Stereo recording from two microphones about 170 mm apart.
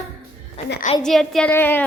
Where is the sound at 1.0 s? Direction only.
Centre (ahead or behind).